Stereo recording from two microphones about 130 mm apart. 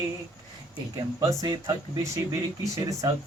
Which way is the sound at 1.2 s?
25° right (ahead or behind).